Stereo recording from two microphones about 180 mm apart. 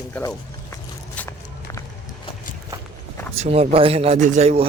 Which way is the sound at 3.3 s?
35° right (ahead or behind).